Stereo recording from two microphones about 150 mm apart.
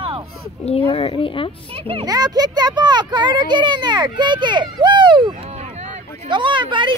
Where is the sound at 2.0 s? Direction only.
25° right (ahead or behind).